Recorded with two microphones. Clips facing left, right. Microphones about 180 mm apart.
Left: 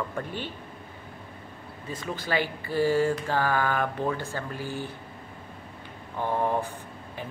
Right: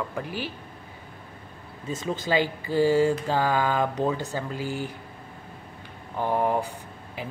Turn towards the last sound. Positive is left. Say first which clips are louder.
# right 2 dB
turn(degrees=-15)  # may be behind; listen again after turning